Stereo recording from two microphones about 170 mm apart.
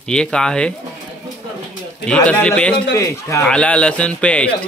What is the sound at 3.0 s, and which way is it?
Speech, 15° left (ahead or behind).